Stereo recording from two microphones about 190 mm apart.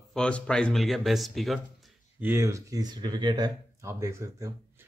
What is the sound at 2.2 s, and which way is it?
Speech, 15° right (ahead or behind).